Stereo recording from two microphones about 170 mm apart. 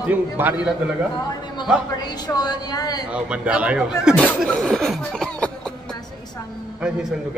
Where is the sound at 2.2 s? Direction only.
25° left (ahead or behind).